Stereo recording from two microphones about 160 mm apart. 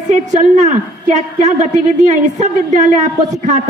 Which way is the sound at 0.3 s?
50° right (ahead or behind).